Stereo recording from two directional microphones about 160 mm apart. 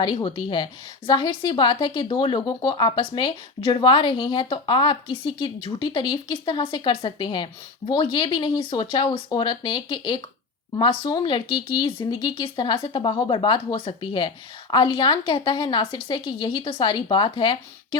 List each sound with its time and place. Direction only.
0.0 s speech: 30° left (ahead or behind)